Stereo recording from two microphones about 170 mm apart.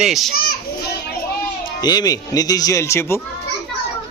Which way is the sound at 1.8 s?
25° left (ahead or behind).